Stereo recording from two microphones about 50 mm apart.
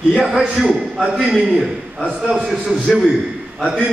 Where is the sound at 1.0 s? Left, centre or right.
Right.